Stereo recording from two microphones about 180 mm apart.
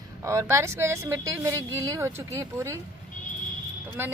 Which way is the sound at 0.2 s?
15° right (ahead or behind).